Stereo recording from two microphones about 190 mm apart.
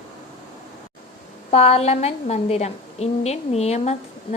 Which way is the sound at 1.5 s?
30° left (ahead or behind).